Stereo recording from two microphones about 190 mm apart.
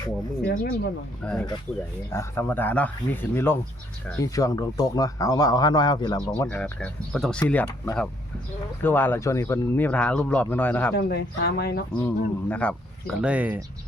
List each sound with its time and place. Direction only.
0.4 s speech: 50° left (ahead or behind)
1.2 s speech: 5° left (ahead or behind); by 6.3 s 20° left (ahead or behind)
6.3 s speech: 5° left (ahead or behind)
10.9 s speech: 55° left (ahead or behind)
11.9 s speech: 10° left (ahead or behind)
13.2 s speech: 5° right (ahead or behind)